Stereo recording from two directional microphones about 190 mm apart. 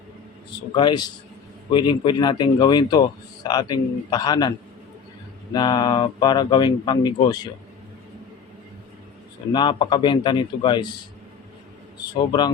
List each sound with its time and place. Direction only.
0.8 s a man's voice: 25° left (ahead or behind)
5.5 s a man's voice: 20° left (ahead or behind)
9.5 s a man's voice: 25° left (ahead or behind)
12.1 s a man's voice: 25° left (ahead or behind)